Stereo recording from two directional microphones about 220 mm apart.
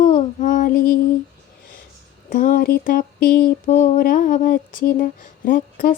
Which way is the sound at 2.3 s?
40° left (ahead or behind).